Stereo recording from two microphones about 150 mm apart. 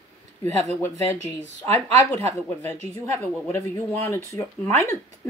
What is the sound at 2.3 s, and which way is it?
Speech, 15° left (ahead or behind).